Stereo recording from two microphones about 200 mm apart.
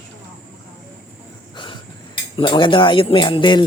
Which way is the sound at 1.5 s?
25° left (ahead or behind).